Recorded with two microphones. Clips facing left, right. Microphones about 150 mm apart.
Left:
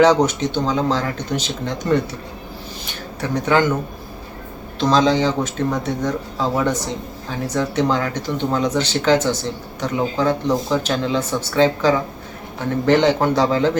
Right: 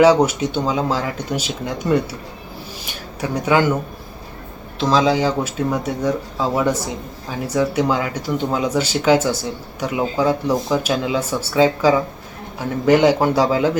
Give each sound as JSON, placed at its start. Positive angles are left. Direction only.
{"t": 0.0, "sound": "speech", "side_deg": -10}
{"t": 2.8, "sound": "a sound", "side_deg": -10}
{"t": 4.8, "sound": "speech", "side_deg": -5}